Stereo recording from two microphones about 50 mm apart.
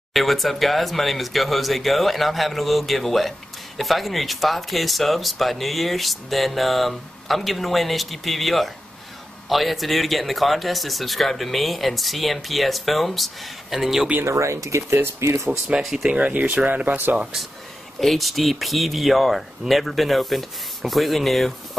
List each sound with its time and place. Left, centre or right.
0.1 s speech: centre
14.2 s speech: right
16.0 s speech: right
18.0 s speech: centre